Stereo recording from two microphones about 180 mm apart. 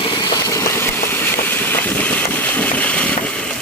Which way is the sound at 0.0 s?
25° left (ahead or behind).